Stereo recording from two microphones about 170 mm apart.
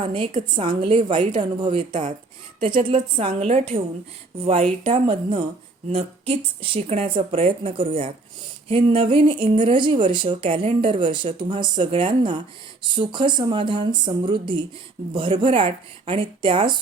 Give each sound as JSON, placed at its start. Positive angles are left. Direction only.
{"t": 0.0, "sound": "a woman's voice", "side_deg": -30}